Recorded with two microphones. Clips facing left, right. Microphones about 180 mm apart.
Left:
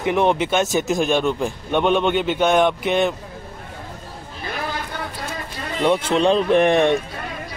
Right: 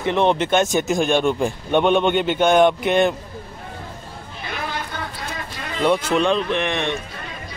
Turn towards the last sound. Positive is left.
turn(degrees=45)  # may be behind; listen again after turning